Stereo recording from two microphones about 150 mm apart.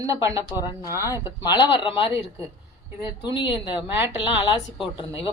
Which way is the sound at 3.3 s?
30° left (ahead or behind).